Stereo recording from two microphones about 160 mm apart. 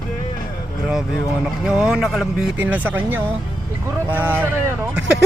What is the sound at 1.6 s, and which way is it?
Speech, 5° right (ahead or behind).